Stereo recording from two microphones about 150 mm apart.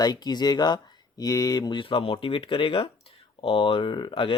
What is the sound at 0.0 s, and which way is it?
Speech, 25° left (ahead or behind).